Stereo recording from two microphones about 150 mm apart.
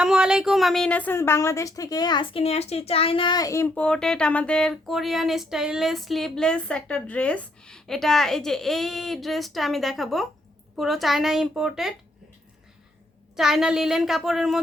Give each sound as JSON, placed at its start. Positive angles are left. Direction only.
{"t": 0.0, "sound": "a woman's voice", "side_deg": -5}
{"t": 3.8, "sound": "speech", "side_deg": 5}
{"t": 13.3, "sound": "speech", "side_deg": -5}